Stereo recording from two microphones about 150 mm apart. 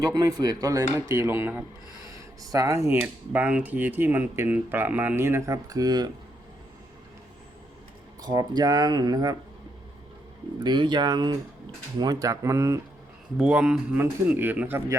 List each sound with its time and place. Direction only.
0.0 s speech: 25° right (ahead or behind)
2.9 s speech: 10° right (ahead or behind); by 6.1 s 25° right (ahead or behind)
8.2 s speech: 25° right (ahead or behind)
10.6 s speech: 30° right (ahead or behind)
13.3 s speech: 5° right (ahead or behind)